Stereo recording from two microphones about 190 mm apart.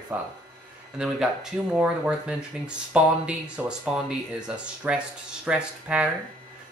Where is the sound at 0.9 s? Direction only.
5° right (ahead or behind).